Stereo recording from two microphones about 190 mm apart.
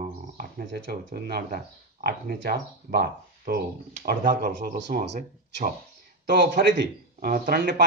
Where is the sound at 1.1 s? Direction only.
55° right (ahead or behind).